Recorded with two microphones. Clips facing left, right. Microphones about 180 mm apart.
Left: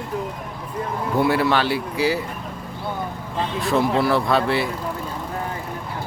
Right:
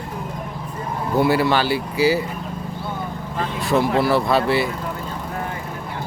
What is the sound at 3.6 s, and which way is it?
A man's voice, centre (ahead or behind).